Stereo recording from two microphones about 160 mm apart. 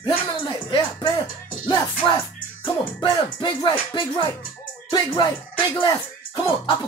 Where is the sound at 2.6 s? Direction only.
30° left (ahead or behind).